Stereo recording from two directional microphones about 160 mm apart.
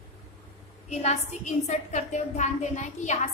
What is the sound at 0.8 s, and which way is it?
A woman's voice, 45° left (ahead or behind).